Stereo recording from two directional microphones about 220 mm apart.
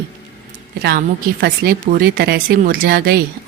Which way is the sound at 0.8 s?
45° right (ahead or behind).